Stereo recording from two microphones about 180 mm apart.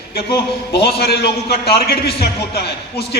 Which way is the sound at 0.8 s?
60° left (ahead or behind).